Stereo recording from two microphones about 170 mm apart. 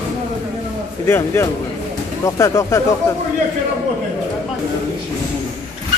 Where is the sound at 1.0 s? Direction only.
15° left (ahead or behind).